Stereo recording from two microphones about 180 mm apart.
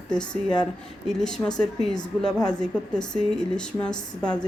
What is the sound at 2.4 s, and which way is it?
Speech, 20° left (ahead or behind).